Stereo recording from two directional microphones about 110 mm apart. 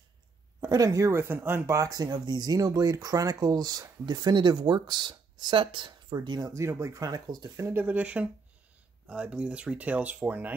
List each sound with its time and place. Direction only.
0.6 s speech: 35° right (ahead or behind)
6.5 s speech: 25° right (ahead or behind)
7.5 s speech: 20° right (ahead or behind)